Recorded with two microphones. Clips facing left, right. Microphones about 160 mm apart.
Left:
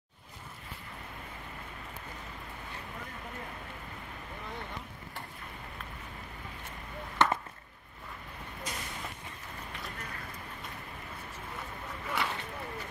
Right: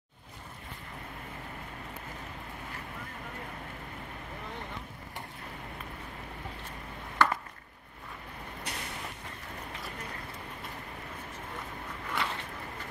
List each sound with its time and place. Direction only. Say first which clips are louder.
7.2 s chop: even; 20° left (ahead or behind)
8.7 s vehicle: even; 70° right (ahead or behind)
12.1 s a sound: left 1 dB; centre (ahead or behind)